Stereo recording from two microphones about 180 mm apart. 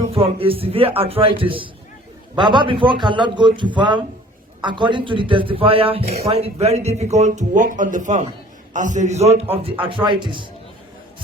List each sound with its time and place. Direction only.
0.1 s a man's voice: 30° right (ahead or behind)